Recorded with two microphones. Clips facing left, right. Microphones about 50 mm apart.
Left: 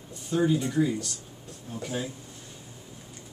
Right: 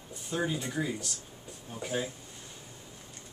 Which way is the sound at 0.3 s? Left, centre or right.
Centre.